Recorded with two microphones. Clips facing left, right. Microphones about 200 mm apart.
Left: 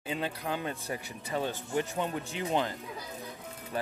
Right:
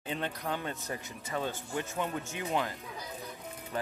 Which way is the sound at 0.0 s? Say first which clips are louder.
Left 1 dB; 10° left (ahead or behind).